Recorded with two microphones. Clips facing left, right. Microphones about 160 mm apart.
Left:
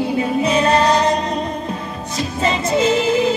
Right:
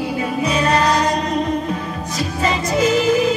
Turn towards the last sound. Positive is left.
turn(degrees=30)  # may be behind; listen again after turning